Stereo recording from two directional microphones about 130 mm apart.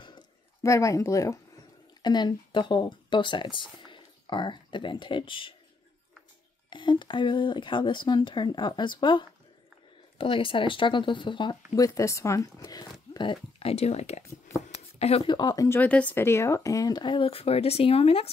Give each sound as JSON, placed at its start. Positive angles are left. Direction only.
{"t": 0.6, "sound": "speech", "side_deg": 25}
{"t": 2.0, "sound": "speech", "side_deg": 35}
{"t": 6.7, "sound": "speech", "side_deg": 40}
{"t": 13.1, "sound": "speech", "side_deg": 40}
{"t": 14.7, "sound": "a sound", "side_deg": 55}
{"t": 15.2, "sound": "speech", "side_deg": 35}
{"t": 15.8, "sound": "speech", "side_deg": 10}